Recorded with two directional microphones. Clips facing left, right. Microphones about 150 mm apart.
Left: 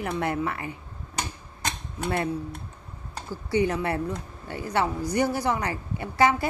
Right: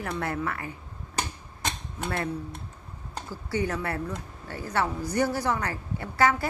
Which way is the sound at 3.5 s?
20° left (ahead or behind).